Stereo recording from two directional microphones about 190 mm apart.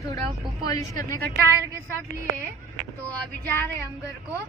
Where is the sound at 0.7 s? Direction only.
15° left (ahead or behind).